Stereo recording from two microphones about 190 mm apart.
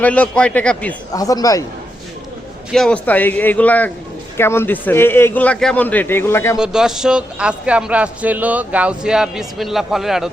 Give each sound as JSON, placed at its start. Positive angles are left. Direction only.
{"t": 0.0, "sound": "a man's voice", "side_deg": 5}
{"t": 1.1, "sound": "a man's voice", "side_deg": 20}
{"t": 2.7, "sound": "a man's voice", "side_deg": 5}
{"t": 6.6, "sound": "speech", "side_deg": -5}